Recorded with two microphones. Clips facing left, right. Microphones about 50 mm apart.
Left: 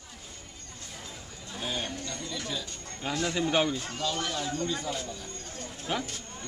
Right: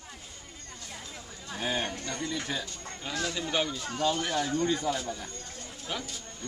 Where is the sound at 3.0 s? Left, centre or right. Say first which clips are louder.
Left 4 dB; centre.